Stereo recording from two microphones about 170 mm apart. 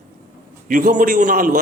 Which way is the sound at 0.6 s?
55° right (ahead or behind).